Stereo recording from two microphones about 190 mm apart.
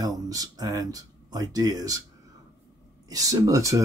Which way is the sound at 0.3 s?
20° right (ahead or behind).